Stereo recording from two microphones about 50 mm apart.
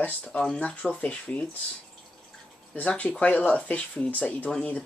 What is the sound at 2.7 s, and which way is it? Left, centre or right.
Speech, left.